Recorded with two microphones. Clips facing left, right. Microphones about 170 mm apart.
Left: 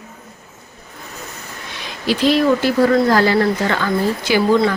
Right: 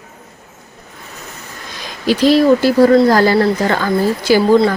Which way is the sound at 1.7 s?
40° right (ahead or behind).